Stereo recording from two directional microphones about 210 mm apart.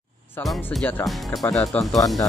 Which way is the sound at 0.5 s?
Centre (ahead or behind).